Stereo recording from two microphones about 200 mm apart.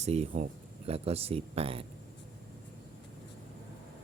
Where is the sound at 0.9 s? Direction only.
30° right (ahead or behind).